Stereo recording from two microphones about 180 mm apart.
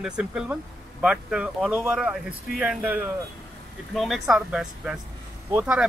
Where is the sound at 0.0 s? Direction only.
5° right (ahead or behind).